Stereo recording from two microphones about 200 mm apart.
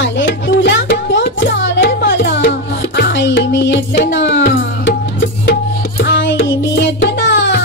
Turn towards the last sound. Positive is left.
turn(degrees=65)  # may be behind; listen again after turning